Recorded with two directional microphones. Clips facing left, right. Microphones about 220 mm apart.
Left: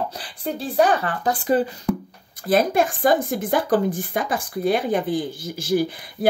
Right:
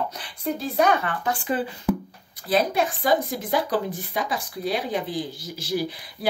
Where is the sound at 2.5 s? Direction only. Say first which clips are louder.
Left 4 dB; 50° left (ahead or behind).